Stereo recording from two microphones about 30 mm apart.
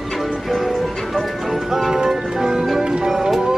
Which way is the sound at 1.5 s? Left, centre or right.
Centre.